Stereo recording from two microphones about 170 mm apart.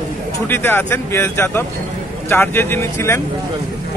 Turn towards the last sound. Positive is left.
turn(degrees=15)  # may be behind; listen again after turning